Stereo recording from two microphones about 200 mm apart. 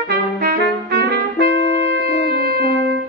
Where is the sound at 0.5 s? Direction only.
55° right (ahead or behind).